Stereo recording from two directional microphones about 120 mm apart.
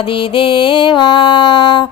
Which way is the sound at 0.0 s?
45° left (ahead or behind).